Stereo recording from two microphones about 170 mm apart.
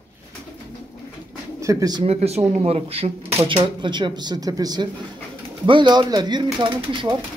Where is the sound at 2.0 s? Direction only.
40° right (ahead or behind).